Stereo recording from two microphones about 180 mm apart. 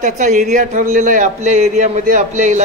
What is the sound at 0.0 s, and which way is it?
A man's voice, 45° right (ahead or behind).